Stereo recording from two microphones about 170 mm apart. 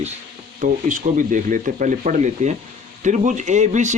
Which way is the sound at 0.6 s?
50° right (ahead or behind).